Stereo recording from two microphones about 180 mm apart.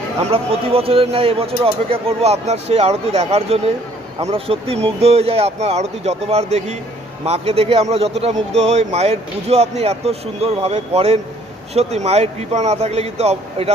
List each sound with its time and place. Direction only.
0.2 s speech: 35° right (ahead or behind)